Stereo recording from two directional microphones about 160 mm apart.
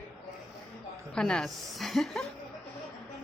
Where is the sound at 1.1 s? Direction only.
5° left (ahead or behind).